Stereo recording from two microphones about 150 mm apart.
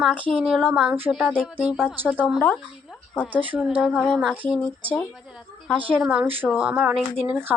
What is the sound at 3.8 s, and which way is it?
Speech, centre (ahead or behind).